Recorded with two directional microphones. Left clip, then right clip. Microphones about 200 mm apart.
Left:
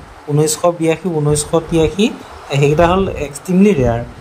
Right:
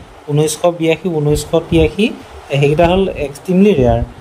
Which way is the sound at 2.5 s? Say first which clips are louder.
Even; 25° left (ahead or behind).